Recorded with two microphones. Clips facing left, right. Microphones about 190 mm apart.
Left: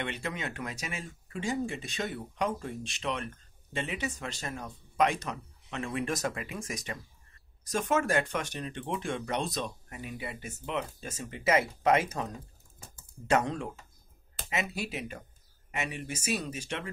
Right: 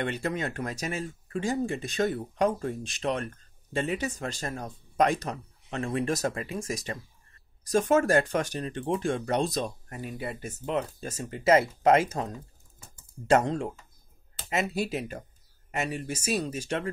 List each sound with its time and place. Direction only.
0.0 s speech: 40° right (ahead or behind)
13.3 s speech: 35° right (ahead or behind)